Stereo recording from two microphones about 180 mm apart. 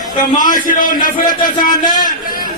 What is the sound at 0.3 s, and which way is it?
A man's voice, 50° left (ahead or behind).